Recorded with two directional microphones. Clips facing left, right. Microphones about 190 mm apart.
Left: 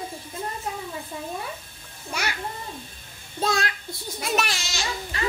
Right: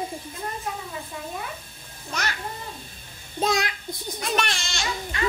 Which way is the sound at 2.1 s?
10° left (ahead or behind).